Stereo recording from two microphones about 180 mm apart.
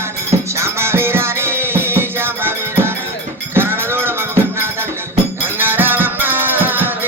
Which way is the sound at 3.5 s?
10° right (ahead or behind).